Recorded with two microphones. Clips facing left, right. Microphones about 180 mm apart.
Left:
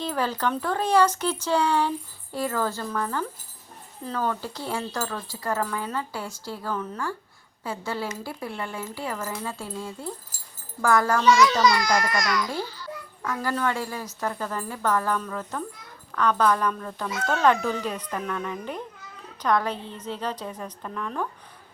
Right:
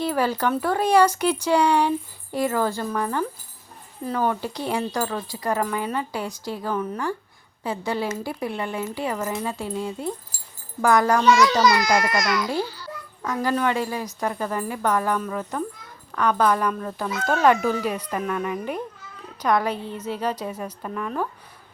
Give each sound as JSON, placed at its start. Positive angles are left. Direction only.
{"t": 0.0, "sound": "speech", "side_deg": -10}
{"t": 11.3, "sound": "speech", "side_deg": 0}
{"t": 13.2, "sound": "speech", "side_deg": -20}